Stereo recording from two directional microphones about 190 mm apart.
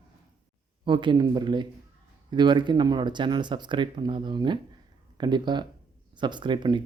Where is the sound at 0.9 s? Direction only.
25° right (ahead or behind).